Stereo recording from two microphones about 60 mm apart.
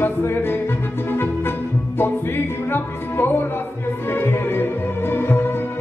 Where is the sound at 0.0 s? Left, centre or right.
Left.